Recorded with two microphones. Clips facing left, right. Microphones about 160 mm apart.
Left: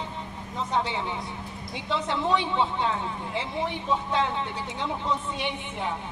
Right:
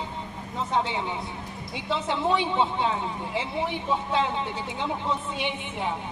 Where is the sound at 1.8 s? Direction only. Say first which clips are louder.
Right 1 dB; 20° right (ahead or behind).